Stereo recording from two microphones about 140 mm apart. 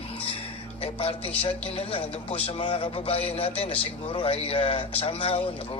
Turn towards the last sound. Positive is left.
turn(degrees=40)  # may be behind; listen again after turning